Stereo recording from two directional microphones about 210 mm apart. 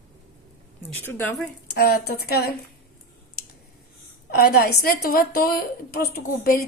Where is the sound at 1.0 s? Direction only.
10° left (ahead or behind).